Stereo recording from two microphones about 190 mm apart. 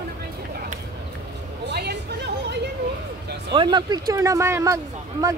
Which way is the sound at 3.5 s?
25° right (ahead or behind).